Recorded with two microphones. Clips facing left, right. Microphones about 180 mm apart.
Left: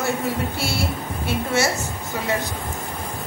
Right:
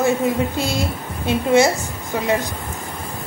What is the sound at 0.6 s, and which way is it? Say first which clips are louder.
A woman's voice: right 3 dB; 15° right (ahead or behind).